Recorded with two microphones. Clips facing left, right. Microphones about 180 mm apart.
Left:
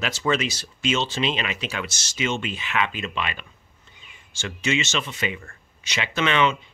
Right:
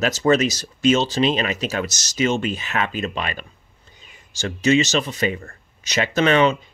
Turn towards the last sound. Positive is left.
turn(degrees=-40)  # may be behind; listen again after turning